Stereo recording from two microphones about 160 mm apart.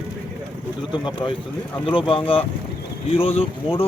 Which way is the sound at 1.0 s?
30° left (ahead or behind).